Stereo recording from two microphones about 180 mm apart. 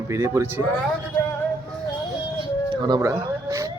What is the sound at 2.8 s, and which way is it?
Speech, 20° right (ahead or behind).